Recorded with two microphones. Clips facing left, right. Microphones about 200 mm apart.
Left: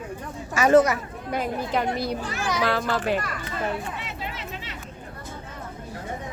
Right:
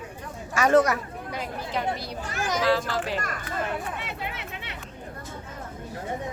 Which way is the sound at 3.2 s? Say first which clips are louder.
Left 1 dB; 50° right (ahead or behind).